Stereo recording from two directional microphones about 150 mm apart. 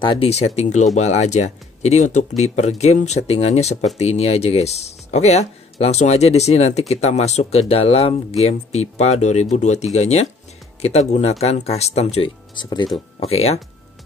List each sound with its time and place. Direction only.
0.0 s speech: 30° left (ahead or behind)
0.6 s speech: 50° left (ahead or behind)
12.5 s speech: 30° left (ahead or behind)
13.2 s speech: 45° left (ahead or behind)